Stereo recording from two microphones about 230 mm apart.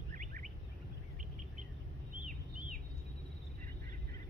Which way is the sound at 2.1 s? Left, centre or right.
Right.